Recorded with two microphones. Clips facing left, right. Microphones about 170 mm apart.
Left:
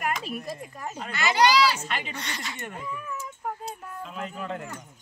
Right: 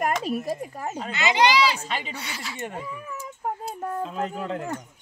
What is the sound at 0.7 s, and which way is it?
Speech, 35° right (ahead or behind).